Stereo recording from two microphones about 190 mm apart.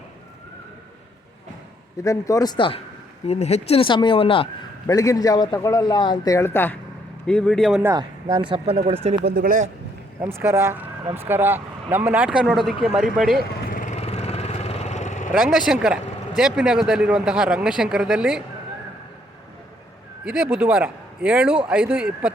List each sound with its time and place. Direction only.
2.0 s speech: 15° left (ahead or behind)
7.8 s speech: 15° right (ahead or behind)
8.4 s speech: 25° right (ahead or behind)
9.2 s speech: 50° right (ahead or behind)
10.2 s speech: 15° right (ahead or behind)
13.4 s vehicle: 45° left (ahead or behind)
15.3 s speech: centre (ahead or behind)
20.2 s speech: 5° right (ahead or behind)